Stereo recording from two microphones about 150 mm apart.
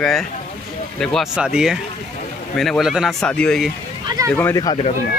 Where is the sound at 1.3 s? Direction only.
5° right (ahead or behind).